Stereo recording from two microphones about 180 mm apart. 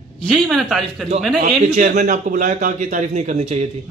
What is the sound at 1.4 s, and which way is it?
A man's voice, 40° right (ahead or behind).